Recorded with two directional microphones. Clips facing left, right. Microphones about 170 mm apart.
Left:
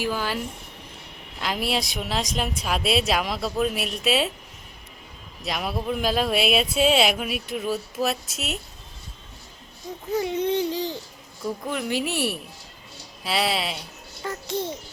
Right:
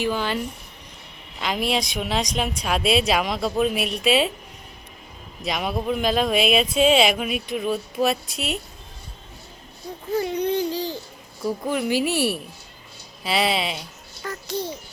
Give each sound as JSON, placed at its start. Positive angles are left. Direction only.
{"t": 0.0, "sound": "speech", "side_deg": 5}
{"t": 1.4, "sound": "speech", "side_deg": 5}
{"t": 5.5, "sound": "speech", "side_deg": 0}
{"t": 10.1, "sound": "speech", "side_deg": 20}
{"t": 11.4, "sound": "speech", "side_deg": -5}
{"t": 14.2, "sound": "speech", "side_deg": 25}